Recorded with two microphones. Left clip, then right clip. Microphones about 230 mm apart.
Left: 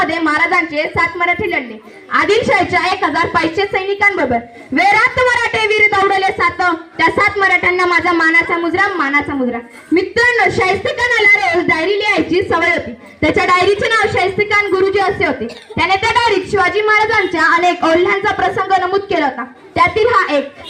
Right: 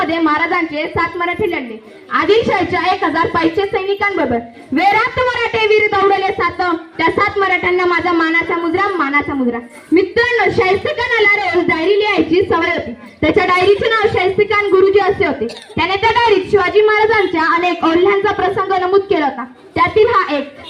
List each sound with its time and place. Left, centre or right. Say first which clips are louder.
0.0 s a woman's voice: left 1 dB; left
13.2 s a sound: even; left
15.8 s a woman's voice: even; left